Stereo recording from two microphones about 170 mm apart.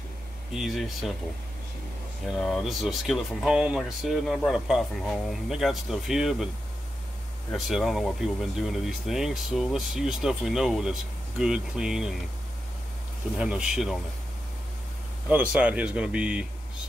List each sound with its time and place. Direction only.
0.5 s speech: centre (ahead or behind)
2.3 s speech: 5° left (ahead or behind)
7.6 s speech: centre (ahead or behind)
13.4 s speech: 5° right (ahead or behind)
15.2 s speech: 5° right (ahead or behind)